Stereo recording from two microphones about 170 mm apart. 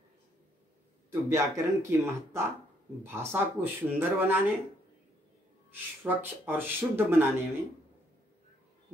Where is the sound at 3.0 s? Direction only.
15° right (ahead or behind).